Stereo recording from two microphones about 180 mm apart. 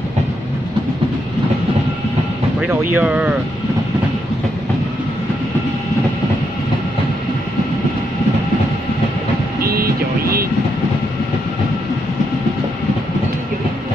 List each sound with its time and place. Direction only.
2.7 s speech: 10° right (ahead or behind)
9.6 s vehicle: 55° right (ahead or behind)